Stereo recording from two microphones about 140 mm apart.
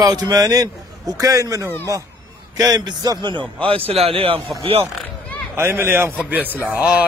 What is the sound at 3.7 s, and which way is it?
A man's voice, 45° right (ahead or behind).